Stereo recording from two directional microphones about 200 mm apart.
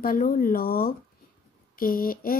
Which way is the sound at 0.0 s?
45° left (ahead or behind).